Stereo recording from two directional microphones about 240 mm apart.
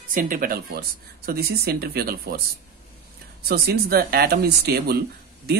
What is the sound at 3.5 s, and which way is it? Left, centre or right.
Speech, right.